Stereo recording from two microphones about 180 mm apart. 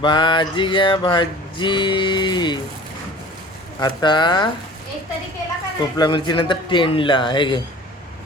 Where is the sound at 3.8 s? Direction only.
25° left (ahead or behind).